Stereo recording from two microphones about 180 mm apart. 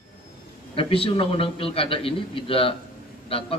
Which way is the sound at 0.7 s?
30° left (ahead or behind).